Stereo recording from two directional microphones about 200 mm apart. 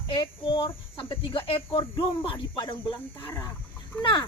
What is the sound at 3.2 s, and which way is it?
Speech, 15° left (ahead or behind).